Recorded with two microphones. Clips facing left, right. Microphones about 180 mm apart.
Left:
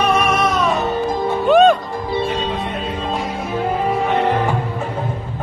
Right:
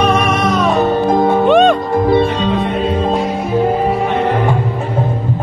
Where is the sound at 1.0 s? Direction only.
60° right (ahead or behind).